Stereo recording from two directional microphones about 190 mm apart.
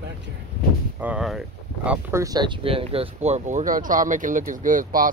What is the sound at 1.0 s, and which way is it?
Speech, 5° right (ahead or behind).